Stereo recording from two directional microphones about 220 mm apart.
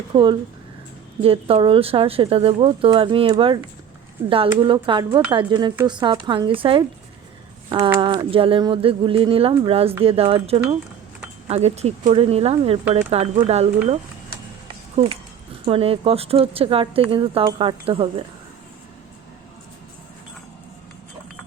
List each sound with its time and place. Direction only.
0.1 s speech: 20° right (ahead or behind)
7.7 s speech: 15° right (ahead or behind); by 13.4 s 30° right (ahead or behind)
14.9 s speech: 25° right (ahead or behind)